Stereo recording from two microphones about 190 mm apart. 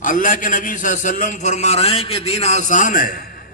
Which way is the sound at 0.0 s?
45° left (ahead or behind).